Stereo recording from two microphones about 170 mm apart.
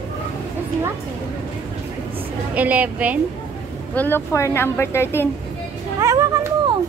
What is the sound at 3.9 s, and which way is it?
A woman's voice, 10° left (ahead or behind).